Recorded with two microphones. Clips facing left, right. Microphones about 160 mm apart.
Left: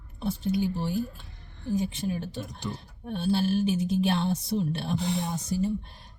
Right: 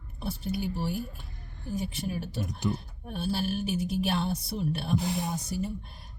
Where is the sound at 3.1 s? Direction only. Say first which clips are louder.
Left 5 dB; 25° left (ahead or behind).